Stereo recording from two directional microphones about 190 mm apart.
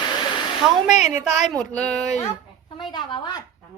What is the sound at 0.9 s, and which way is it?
Speech, 40° left (ahead or behind).